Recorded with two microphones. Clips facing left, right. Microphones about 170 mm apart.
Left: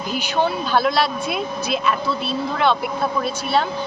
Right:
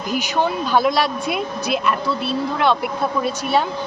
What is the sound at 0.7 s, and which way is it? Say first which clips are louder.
Speech: right 1 dB; 15° right (ahead or behind).